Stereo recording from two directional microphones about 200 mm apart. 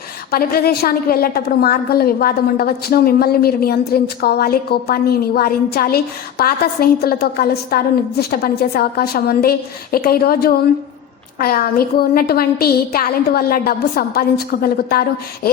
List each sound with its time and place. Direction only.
0.3 s a woman's voice: 50° left (ahead or behind)